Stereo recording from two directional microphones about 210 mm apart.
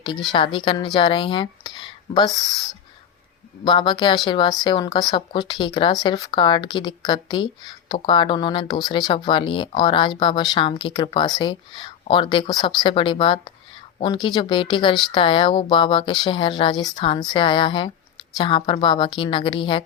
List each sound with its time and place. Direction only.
0.3 s speech: 25° left (ahead or behind)
3.6 s speech: 20° left (ahead or behind)